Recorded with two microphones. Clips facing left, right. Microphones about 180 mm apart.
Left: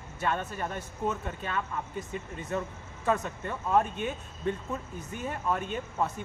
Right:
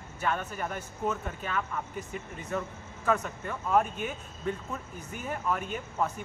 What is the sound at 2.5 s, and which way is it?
Speech, 25° left (ahead or behind).